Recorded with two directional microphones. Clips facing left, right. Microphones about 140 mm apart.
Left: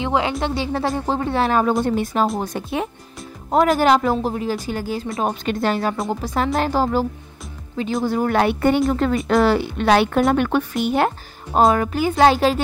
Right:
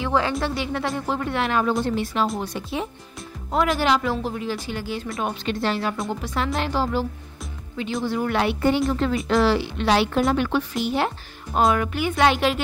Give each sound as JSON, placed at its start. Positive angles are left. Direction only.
{"t": 0.0, "sound": "speech", "side_deg": 20}
{"t": 11.5, "sound": "speech", "side_deg": 40}